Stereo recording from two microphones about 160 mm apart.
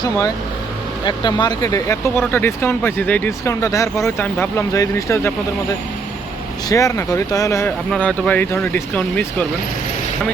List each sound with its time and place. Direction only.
1.0 s speech: 30° left (ahead or behind)
6.7 s speech: 20° left (ahead or behind)
7.9 s speech: 5° left (ahead or behind)